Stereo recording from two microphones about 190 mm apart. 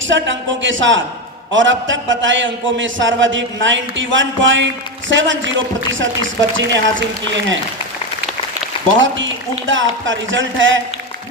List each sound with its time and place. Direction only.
0.1 s a man's voice: 80° right
8.9 s a man's voice: 80° right